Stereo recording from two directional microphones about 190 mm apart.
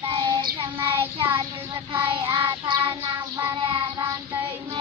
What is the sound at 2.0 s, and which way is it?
Child singing, 25° right (ahead or behind).